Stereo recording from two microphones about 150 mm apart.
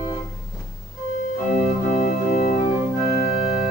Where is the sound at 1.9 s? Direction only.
55° left (ahead or behind).